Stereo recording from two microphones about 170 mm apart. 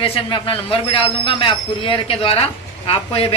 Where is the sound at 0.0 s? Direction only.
35° left (ahead or behind).